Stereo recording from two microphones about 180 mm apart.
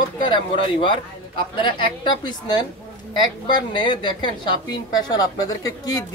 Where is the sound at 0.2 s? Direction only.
25° left (ahead or behind).